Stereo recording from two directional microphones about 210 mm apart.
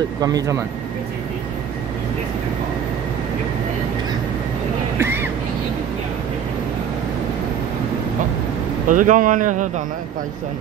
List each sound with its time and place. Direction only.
0.2 s speech: 15° right (ahead or behind)
4.9 s a sound: 10° right (ahead or behind)
8.8 s speech: 40° right (ahead or behind)